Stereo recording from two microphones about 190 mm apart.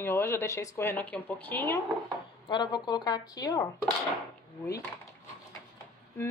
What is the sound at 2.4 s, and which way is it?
Speech, 20° left (ahead or behind).